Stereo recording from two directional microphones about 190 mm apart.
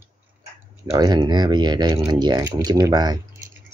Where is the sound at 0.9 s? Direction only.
20° right (ahead or behind).